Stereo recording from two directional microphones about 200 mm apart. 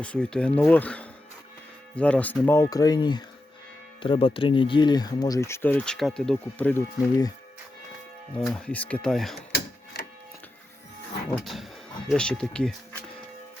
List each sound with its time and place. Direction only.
0.0 s speech: 5° left (ahead or behind)
8.4 s speech: 5° left (ahead or behind)
9.5 s mechanisms: 55° left (ahead or behind)
11.4 s speech: centre (ahead or behind)